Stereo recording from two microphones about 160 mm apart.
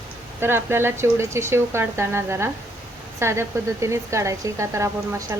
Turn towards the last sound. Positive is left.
turn(degrees=-15)  # may be behind; listen again after turning